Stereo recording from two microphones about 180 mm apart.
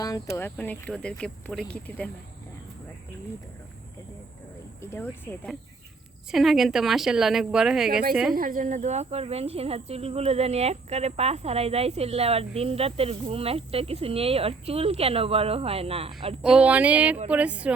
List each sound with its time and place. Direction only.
0.3 s speech: 10° left (ahead or behind)
4.8 s a woman's voice: 15° left (ahead or behind); by 8.4 s 5° right (ahead or behind)
8.4 s speech: 50° right (ahead or behind); by 16.3 s 30° right (ahead or behind)
16.4 s speech: 5° right (ahead or behind)